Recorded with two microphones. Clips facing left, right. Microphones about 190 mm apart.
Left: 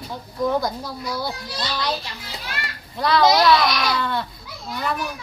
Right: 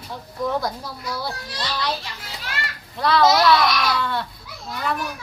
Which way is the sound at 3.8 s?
5° right (ahead or behind).